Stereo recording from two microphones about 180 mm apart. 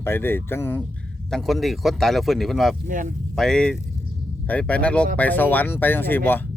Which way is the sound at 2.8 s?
45° right (ahead or behind).